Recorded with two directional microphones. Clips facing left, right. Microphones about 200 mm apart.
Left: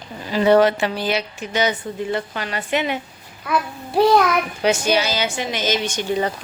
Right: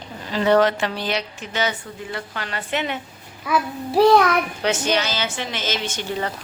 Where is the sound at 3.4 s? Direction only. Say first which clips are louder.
Right 1 dB; centre (ahead or behind); by 6.3 s 15° left (ahead or behind).